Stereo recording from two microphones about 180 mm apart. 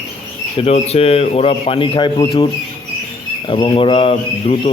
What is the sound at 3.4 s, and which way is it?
Speech, 25° left (ahead or behind).